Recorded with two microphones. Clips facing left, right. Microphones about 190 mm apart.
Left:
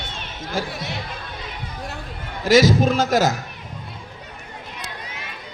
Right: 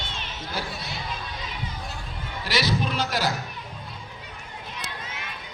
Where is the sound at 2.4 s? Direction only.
45° left (ahead or behind).